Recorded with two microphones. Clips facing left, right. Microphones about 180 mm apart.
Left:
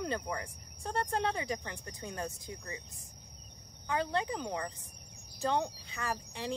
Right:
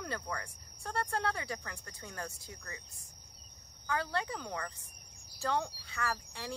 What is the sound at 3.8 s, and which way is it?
A woman's voice, 20° left (ahead or behind).